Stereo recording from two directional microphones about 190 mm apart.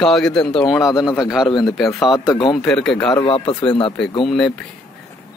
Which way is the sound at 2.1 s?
20° left (ahead or behind).